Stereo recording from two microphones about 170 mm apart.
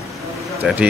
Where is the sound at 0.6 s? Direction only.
10° right (ahead or behind).